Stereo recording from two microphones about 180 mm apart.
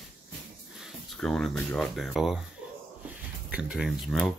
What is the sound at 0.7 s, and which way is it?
Speech, centre (ahead or behind).